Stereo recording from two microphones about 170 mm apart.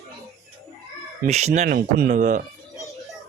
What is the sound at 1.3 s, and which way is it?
Speech, 40° right (ahead or behind).